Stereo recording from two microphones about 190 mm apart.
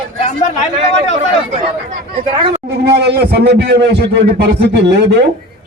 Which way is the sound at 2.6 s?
60° right (ahead or behind).